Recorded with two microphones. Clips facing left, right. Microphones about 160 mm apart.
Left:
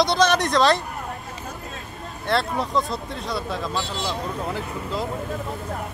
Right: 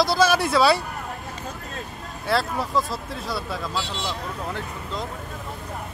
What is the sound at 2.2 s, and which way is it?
Speech, 5° right (ahead or behind).